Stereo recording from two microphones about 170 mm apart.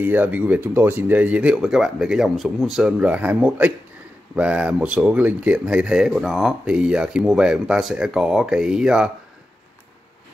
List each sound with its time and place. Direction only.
0.0 s speech: 10° right (ahead or behind)